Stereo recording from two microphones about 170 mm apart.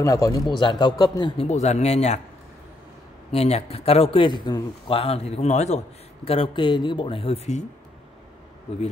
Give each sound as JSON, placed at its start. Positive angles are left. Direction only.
{"t": 0.0, "sound": "a man's voice", "side_deg": 20}
{"t": 1.5, "sound": "a man's voice", "side_deg": 40}
{"t": 3.3, "sound": "a man's voice", "side_deg": 40}